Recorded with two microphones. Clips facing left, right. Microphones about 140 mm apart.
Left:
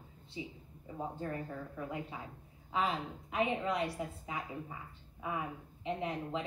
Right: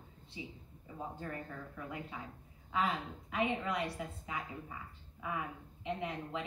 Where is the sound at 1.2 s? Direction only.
25° left (ahead or behind).